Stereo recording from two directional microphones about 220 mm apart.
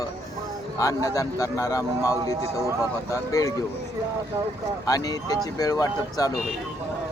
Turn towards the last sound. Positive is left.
turn(degrees=15)  # may be behind; listen again after turning